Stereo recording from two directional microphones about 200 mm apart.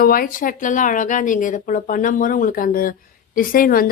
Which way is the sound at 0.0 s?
45° left (ahead or behind).